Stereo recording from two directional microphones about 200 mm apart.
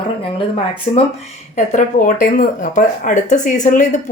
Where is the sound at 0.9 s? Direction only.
30° left (ahead or behind).